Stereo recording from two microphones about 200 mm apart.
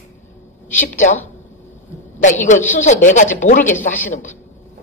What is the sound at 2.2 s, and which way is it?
A woman's voice, 40° left (ahead or behind).